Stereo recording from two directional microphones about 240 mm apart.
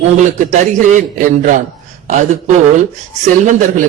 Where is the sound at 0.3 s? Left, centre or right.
Right.